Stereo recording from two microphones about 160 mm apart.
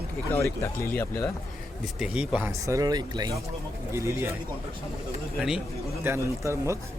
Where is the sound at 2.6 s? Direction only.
20° right (ahead or behind).